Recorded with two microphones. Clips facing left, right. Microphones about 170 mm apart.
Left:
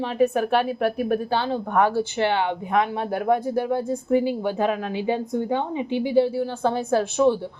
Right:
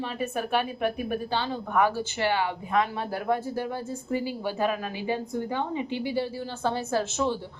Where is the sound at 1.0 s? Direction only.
55° left (ahead or behind).